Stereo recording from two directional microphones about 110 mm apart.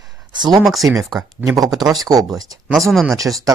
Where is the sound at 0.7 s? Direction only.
Centre (ahead or behind).